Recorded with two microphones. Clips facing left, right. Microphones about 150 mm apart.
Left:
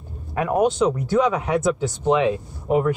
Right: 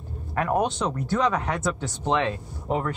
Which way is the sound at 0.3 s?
15° left (ahead or behind).